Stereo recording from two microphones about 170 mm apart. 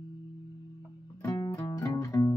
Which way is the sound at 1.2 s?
20° left (ahead or behind).